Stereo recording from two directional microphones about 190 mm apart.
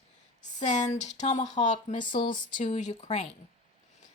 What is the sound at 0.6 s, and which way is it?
Speech, 40° left (ahead or behind).